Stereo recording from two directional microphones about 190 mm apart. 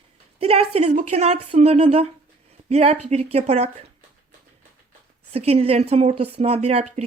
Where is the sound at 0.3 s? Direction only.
30° right (ahead or behind).